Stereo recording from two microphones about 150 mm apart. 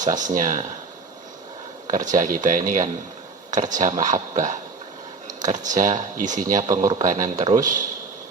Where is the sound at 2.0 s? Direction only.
60° right (ahead or behind).